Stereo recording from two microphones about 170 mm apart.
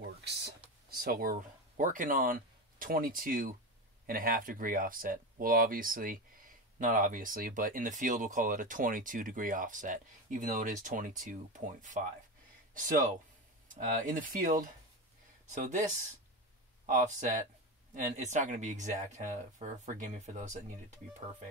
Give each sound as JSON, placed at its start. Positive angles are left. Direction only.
{"t": 0.3, "sound": "speech", "side_deg": -75}
{"t": 0.9, "sound": "speech", "side_deg": -60}